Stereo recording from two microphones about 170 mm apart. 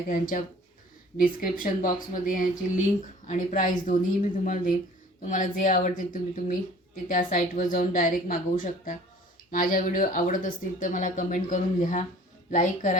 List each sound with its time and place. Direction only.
0.1 s speech: 55° left (ahead or behind)